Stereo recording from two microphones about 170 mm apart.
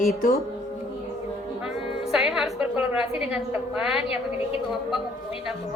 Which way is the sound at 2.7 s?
5° right (ahead or behind).